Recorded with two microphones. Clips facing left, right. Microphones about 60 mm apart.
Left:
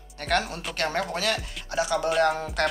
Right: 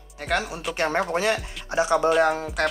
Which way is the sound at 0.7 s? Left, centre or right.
Right.